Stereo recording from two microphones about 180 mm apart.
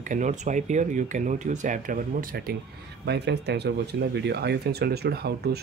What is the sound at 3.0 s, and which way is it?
Speech, 65° right (ahead or behind).